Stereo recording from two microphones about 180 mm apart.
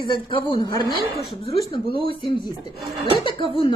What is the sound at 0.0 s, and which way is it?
A woman's voice, 25° left (ahead or behind).